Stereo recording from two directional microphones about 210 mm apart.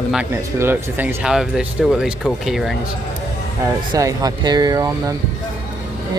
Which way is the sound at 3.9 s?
15° right (ahead or behind).